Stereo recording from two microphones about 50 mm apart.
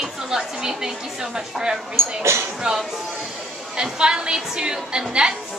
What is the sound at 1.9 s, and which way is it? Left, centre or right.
Speech, right.